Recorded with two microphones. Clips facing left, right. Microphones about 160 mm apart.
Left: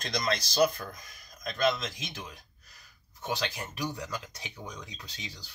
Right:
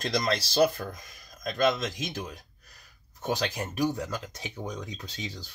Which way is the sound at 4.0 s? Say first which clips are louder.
Right 4 dB; 30° right (ahead or behind).